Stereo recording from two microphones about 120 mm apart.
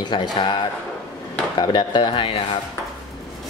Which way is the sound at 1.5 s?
40° left (ahead or behind).